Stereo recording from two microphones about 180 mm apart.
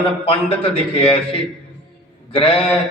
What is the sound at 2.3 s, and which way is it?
Speech, 30° left (ahead or behind).